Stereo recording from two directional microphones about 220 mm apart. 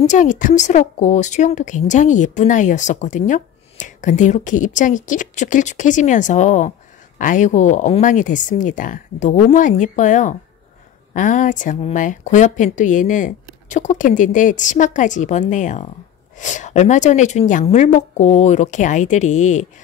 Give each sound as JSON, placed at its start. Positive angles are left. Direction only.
{"t": 0.0, "sound": "a woman's voice", "side_deg": 35}